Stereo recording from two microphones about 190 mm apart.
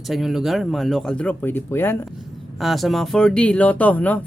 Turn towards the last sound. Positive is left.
turn(degrees=10)  # may be behind; listen again after turning